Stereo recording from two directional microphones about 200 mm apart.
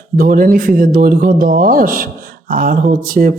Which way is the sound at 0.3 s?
45° right (ahead or behind).